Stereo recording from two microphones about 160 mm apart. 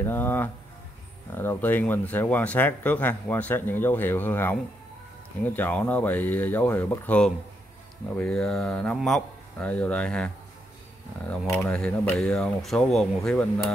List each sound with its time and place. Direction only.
0.0 s speech: 15° left (ahead or behind)
11.4 s speech: 15° left (ahead or behind)
11.7 s speech: 5° left (ahead or behind)